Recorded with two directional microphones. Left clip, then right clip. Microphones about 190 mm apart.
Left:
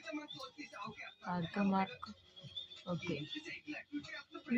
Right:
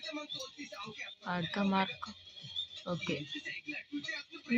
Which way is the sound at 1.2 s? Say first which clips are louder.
Right 3 dB; 20° right (ahead or behind).